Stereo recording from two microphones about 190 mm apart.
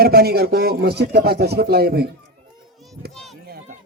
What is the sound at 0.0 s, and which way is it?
A man's voice, 55° right (ahead or behind).